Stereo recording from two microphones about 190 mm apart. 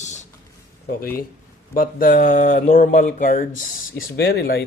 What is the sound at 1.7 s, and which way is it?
Speech, 45° left (ahead or behind).